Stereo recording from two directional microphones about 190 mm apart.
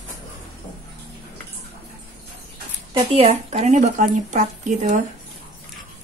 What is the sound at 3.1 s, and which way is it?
A woman's voice, 35° right (ahead or behind).